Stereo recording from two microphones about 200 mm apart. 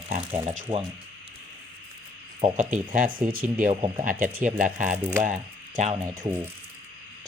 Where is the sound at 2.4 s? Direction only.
35° right (ahead or behind).